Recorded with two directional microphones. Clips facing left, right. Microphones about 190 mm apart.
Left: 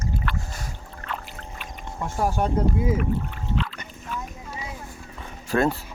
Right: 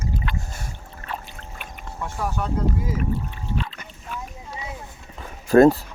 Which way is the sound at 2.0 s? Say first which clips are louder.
Left 3 dB; 30° left (ahead or behind).